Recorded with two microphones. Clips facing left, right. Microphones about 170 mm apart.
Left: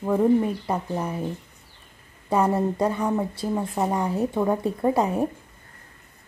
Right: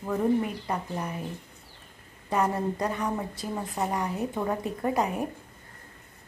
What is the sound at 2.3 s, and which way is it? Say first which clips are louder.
Speech: left 5 dB; 30° left (ahead or behind).